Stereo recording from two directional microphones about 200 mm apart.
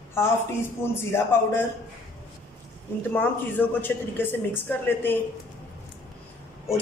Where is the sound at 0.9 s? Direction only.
10° left (ahead or behind).